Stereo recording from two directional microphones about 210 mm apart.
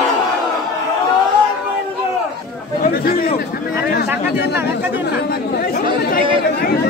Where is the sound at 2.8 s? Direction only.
45° left (ahead or behind).